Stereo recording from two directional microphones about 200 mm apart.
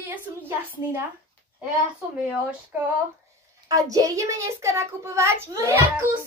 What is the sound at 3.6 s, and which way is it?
A woman's voice, 20° right (ahead or behind).